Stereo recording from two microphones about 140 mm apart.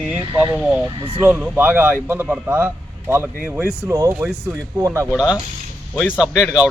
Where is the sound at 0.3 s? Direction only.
10° right (ahead or behind).